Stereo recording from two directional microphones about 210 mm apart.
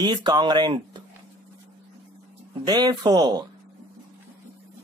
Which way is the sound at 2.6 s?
20° right (ahead or behind).